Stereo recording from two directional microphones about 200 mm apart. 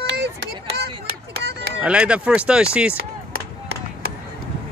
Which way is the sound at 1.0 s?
55° right (ahead or behind).